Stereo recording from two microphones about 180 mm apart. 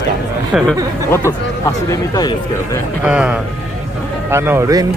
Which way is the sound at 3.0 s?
5° right (ahead or behind).